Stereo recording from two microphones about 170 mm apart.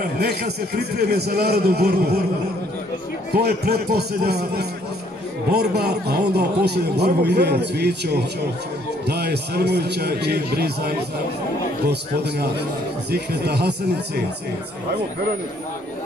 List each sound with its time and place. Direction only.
0.2 s a man's voice: 70° right (ahead or behind)
3.3 s a man's voice: 70° right (ahead or behind)